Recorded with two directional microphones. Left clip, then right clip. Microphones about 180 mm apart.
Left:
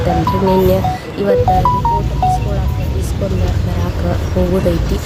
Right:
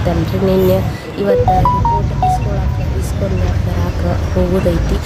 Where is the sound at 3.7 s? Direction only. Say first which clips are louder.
Right 1 dB; centre (ahead or behind).